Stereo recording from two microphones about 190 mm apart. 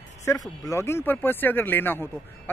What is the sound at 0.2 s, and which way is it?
Speech, 15° left (ahead or behind).